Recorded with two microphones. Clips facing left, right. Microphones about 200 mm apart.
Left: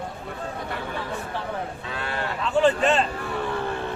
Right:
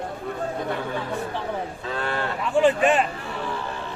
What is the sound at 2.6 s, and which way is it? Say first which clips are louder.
Speech: right 1 dB; 15° right (ahead or behind).